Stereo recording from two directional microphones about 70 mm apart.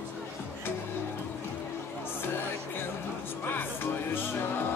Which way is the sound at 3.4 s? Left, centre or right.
Left.